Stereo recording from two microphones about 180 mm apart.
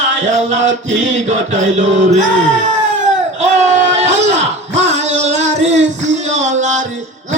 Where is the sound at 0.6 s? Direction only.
90° right.